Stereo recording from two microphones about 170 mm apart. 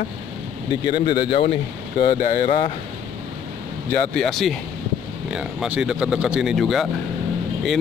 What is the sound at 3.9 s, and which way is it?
Speech, 5° left (ahead or behind).